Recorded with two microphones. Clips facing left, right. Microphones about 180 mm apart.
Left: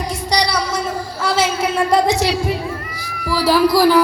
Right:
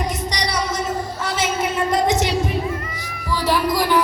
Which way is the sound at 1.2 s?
35° left (ahead or behind).